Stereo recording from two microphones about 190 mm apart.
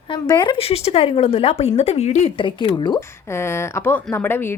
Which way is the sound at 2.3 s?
25° left (ahead or behind).